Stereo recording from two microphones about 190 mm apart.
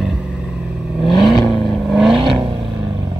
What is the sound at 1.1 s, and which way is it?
Vehicle, 25° left (ahead or behind).